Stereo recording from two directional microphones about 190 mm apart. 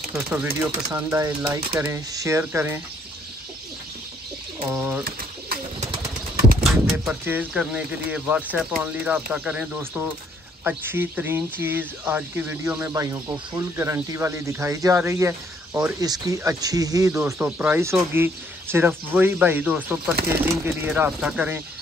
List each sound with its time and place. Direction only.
0.1 s speech: 15° right (ahead or behind)
4.6 s speech: 10° right (ahead or behind)
6.6 s speech: centre (ahead or behind)